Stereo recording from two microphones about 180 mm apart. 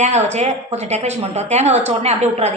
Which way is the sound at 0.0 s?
40° right (ahead or behind).